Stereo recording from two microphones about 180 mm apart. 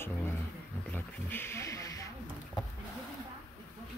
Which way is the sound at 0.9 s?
10° left (ahead or behind).